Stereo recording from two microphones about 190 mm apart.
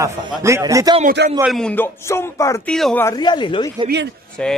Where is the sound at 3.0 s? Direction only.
20° left (ahead or behind).